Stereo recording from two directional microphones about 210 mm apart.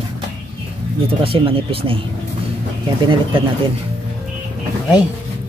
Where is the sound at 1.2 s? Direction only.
25° right (ahead or behind).